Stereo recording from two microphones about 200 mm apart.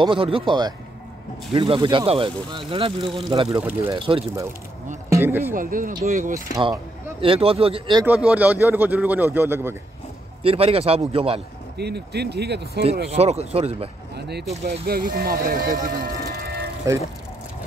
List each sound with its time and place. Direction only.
0.0 s speech: 25° right (ahead or behind)
3.6 s speech: 10° right (ahead or behind)
5.1 s speech: 10° right (ahead or behind)
5.5 s speech: 45° right (ahead or behind)
6.5 s speech: 20° right (ahead or behind)
8.0 s speech: 10° right (ahead or behind)
10.4 s speech: 30° right (ahead or behind)
11.7 s speech: 55° right (ahead or behind)
13.1 s speech: 30° right (ahead or behind)
14.1 s speech: 55° right (ahead or behind)
16.9 s speech: 15° right (ahead or behind)